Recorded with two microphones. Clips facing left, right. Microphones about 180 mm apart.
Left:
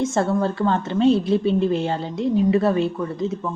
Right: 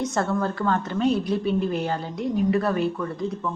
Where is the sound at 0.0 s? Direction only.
25° left (ahead or behind).